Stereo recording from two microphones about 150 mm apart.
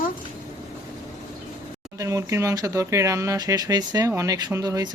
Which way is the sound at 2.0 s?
20° right (ahead or behind).